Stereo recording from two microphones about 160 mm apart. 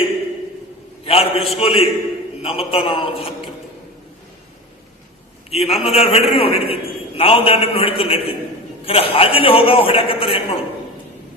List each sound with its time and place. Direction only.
1.0 s a man's voice: 35° left (ahead or behind)
5.5 s a man's voice: 40° left (ahead or behind)